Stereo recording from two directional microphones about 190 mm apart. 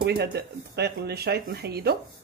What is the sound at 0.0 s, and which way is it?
Speech, 60° right (ahead or behind).